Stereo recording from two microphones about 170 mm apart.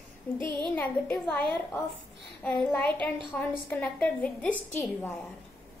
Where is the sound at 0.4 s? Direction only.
30° right (ahead or behind).